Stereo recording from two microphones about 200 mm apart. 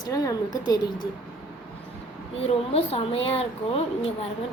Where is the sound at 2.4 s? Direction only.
30° left (ahead or behind).